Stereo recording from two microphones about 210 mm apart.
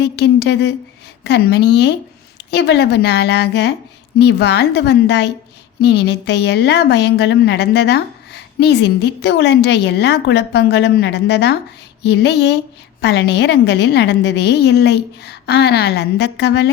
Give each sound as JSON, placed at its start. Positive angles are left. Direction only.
{"t": 0.0, "sound": "a woman's voice", "side_deg": 55}